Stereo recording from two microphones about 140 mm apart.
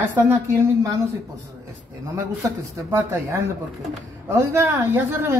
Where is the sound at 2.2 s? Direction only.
25° right (ahead or behind).